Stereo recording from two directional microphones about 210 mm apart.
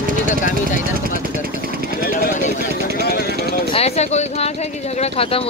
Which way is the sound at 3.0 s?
50° left (ahead or behind).